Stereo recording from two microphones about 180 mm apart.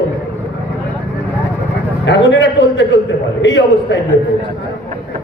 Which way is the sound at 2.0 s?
85° left.